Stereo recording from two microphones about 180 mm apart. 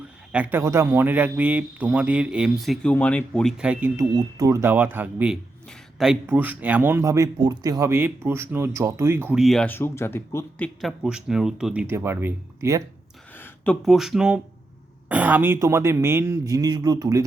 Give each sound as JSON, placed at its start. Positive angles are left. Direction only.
{"t": 0.3, "sound": "speech", "side_deg": -5}
{"t": 3.6, "sound": "speech", "side_deg": -10}
{"t": 9.4, "sound": "speech", "side_deg": 0}
{"t": 10.8, "sound": "speech", "side_deg": 0}
{"t": 13.3, "sound": "a sound", "side_deg": 10}
{"t": 13.8, "sound": "speech", "side_deg": 0}